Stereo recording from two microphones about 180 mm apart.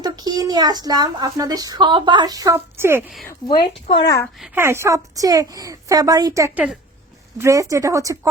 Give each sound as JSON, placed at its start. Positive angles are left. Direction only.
{"t": 0.0, "sound": "a woman's voice", "side_deg": -20}
{"t": 3.8, "sound": "speech", "side_deg": 25}
{"t": 4.4, "sound": "speech", "side_deg": 0}
{"t": 4.6, "sound": "a woman's voice", "side_deg": -15}